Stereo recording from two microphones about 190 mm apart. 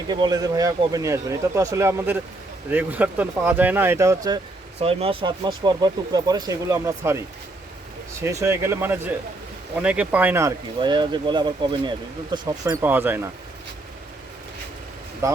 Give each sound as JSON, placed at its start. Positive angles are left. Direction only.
{"t": 0.1, "sound": "speech", "side_deg": -20}
{"t": 4.8, "sound": "speech", "side_deg": -30}
{"t": 8.2, "sound": "speech", "side_deg": -15}
{"t": 10.8, "sound": "speech", "side_deg": -25}
{"t": 15.2, "sound": "speech", "side_deg": -15}